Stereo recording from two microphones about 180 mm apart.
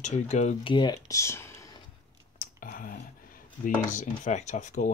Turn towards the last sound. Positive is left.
turn(degrees=40)  # may be behind; listen again after turning